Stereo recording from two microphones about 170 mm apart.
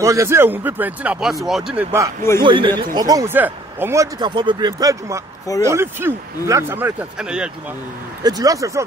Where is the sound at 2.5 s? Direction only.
30° right (ahead or behind); by 7.5 s 5° right (ahead or behind).